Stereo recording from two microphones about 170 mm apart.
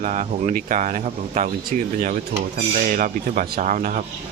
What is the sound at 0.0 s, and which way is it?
Speech, 45° right (ahead or behind).